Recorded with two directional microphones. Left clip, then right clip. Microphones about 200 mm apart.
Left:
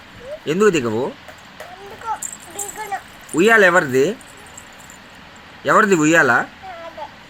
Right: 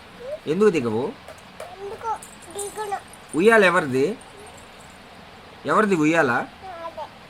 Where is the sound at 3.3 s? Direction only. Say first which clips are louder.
Left 4 dB; 15° left (ahead or behind).